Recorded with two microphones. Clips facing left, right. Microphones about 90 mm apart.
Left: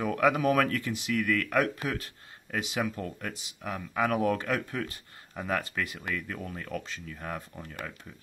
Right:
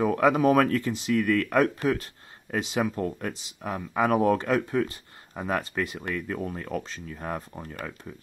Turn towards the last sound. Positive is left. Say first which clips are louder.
# right 4 dB
turn(degrees=-30)  # may be behind; listen again after turning